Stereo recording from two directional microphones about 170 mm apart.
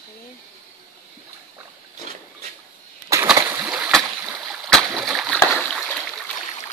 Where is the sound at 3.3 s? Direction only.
10° right (ahead or behind).